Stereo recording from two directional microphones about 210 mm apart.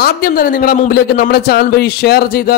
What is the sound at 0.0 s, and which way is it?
Speech, 45° left (ahead or behind).